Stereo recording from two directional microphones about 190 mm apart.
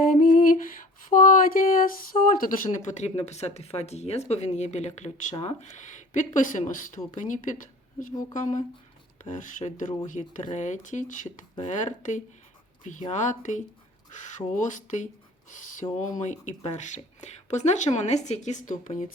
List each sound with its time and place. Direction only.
0.0 s lullaby: 45° left (ahead or behind)
1.1 s speech: 45° left (ahead or behind)